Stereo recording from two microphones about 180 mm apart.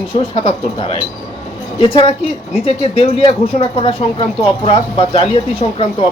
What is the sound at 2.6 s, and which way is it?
Speech, 35° left (ahead or behind).